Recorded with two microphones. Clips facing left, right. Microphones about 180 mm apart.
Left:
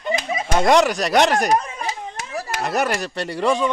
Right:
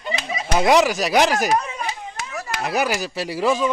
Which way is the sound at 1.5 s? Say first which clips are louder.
Left 1 dB; 45° left (ahead or behind).